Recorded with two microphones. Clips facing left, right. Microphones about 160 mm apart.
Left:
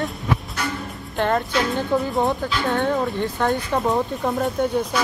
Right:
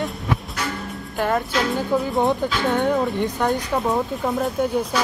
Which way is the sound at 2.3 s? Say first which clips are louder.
Right 2 dB; 20° right (ahead or behind).